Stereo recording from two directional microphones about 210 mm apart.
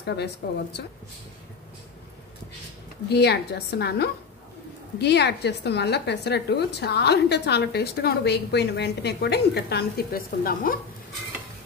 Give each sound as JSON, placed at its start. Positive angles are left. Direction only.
{"t": 0.0, "sound": "speech", "side_deg": 50}
{"t": 3.1, "sound": "a woman's voice", "side_deg": 50}